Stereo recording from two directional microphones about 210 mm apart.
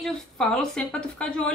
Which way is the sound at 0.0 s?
Centre (ahead or behind).